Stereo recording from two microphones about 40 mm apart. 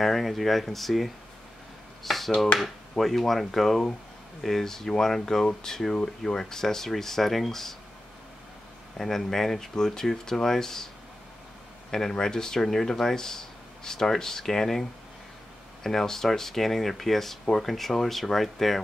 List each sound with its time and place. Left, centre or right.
0.0 s speech: centre
2.0 s a sound: centre
2.6 s speech: centre
8.9 s speech: centre
11.9 s speech: centre